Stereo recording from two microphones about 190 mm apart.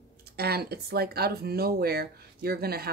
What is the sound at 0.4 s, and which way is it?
Speech, 55° right (ahead or behind).